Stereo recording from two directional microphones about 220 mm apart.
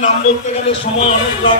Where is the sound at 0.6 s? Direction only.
25° left (ahead or behind).